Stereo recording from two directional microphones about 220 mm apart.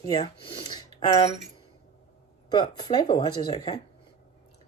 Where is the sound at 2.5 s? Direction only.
20° left (ahead or behind).